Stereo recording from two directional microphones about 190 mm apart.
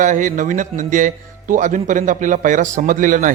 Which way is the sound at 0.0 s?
40° right (ahead or behind).